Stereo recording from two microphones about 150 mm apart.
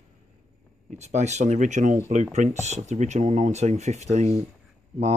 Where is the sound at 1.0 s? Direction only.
50° right (ahead or behind).